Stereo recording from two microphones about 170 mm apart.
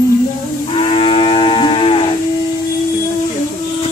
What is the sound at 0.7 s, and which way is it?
Moo, 35° left (ahead or behind).